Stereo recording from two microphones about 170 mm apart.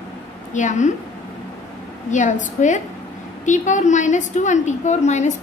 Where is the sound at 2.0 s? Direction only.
45° left (ahead or behind).